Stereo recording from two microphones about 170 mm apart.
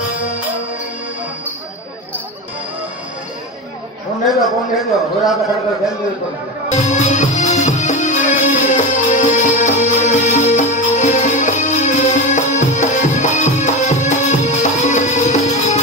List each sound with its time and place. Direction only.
4.3 s a man's voice: centre (ahead or behind)
6.7 s music: 45° left (ahead or behind)